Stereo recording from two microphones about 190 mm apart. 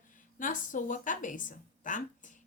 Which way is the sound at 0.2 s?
45° left (ahead or behind).